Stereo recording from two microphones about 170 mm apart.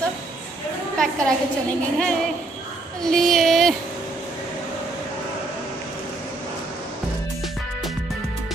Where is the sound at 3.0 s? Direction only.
Centre (ahead or behind).